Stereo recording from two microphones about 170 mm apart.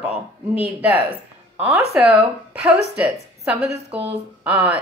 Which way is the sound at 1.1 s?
15° right (ahead or behind).